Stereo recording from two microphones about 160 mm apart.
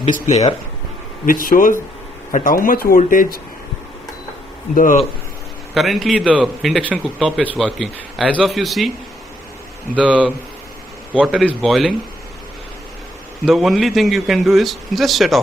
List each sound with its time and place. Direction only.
0.0 s speech: 45° left (ahead or behind)
1.2 s speech: 60° left (ahead or behind)
4.7 s speech: 55° left (ahead or behind)
5.8 s a man's voice: centre (ahead or behind)
9.9 s a man's voice: 5° right (ahead or behind)
13.5 s a man's voice: centre (ahead or behind)